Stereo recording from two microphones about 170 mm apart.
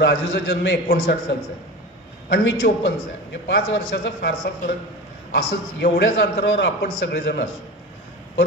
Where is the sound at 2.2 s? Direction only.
90° left; by 4.7 s 60° left (ahead or behind).